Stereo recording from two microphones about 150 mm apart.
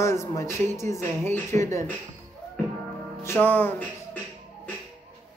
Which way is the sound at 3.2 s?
15° left (ahead or behind).